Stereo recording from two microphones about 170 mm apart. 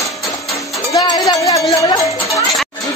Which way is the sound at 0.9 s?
25° left (ahead or behind).